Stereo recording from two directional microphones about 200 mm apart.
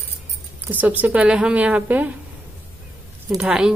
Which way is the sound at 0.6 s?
10° right (ahead or behind).